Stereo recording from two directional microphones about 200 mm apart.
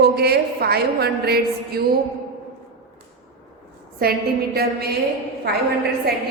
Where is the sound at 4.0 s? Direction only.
50° right (ahead or behind).